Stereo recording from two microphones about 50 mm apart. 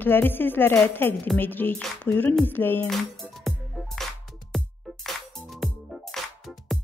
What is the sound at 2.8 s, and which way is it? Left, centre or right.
Music, centre.